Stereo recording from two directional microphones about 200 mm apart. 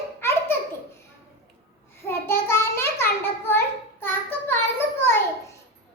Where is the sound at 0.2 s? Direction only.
10° left (ahead or behind).